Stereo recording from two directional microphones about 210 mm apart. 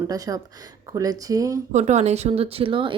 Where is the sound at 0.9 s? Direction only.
15° right (ahead or behind).